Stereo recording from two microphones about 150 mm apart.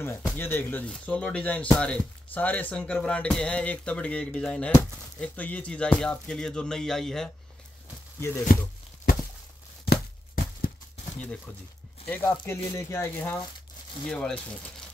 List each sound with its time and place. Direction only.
0.0 s speech: 15° left (ahead or behind)
8.5 s speech: 80° left
9.8 s a sound: 80° left
12.1 s speech: 15° left (ahead or behind)